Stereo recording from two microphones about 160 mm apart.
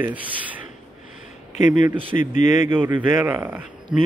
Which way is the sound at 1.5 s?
50° left (ahead or behind).